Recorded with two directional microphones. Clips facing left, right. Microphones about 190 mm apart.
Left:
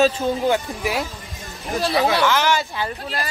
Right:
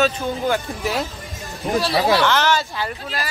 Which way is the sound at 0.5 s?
15° left (ahead or behind).